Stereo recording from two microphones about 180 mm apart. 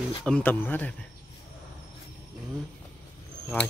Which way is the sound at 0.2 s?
5° left (ahead or behind).